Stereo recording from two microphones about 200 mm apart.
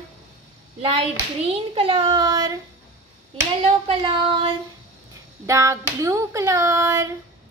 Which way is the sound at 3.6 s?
25° right (ahead or behind).